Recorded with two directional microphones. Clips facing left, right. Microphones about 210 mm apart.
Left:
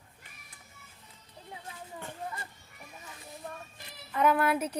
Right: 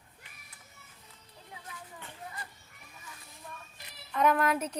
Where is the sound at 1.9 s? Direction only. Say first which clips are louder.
Left 9 dB; 45° left (ahead or behind).